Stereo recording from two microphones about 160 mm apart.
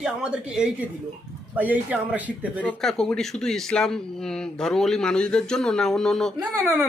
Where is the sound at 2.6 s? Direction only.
5° left (ahead or behind).